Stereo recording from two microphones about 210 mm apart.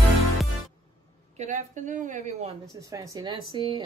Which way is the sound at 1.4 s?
35° right (ahead or behind).